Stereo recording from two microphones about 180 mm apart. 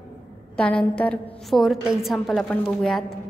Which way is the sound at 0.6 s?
5° left (ahead or behind).